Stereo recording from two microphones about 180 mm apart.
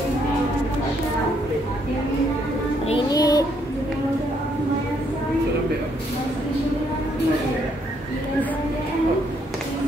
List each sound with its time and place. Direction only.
2.9 s music: 25° left (ahead or behind)